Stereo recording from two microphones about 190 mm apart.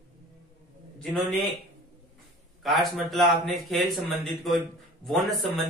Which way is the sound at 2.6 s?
Centre (ahead or behind).